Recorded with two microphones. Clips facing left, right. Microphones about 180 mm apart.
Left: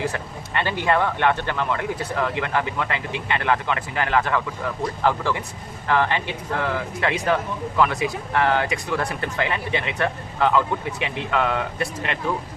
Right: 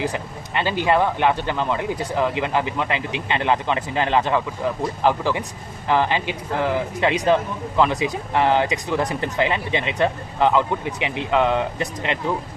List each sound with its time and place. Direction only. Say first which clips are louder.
0.0 s speech: right 2 dB; 15° right (ahead or behind)